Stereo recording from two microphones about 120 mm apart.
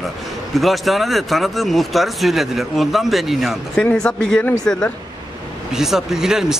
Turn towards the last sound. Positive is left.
turn(degrees=-5)  # may be behind; listen again after turning